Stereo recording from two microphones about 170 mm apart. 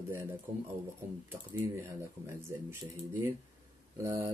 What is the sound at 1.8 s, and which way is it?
Speech, 15° right (ahead or behind).